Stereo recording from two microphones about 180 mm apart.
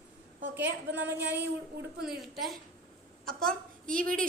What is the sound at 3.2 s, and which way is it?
A woman's voice, 50° right (ahead or behind).